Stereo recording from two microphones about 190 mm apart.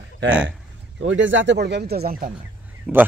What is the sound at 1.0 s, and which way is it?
Speech, 75° right (ahead or behind).